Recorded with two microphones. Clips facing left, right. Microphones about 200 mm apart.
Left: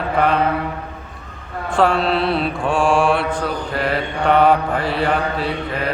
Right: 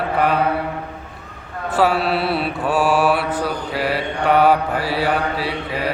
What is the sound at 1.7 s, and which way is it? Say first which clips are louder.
Mantra: left 1 dB; 5° right (ahead or behind).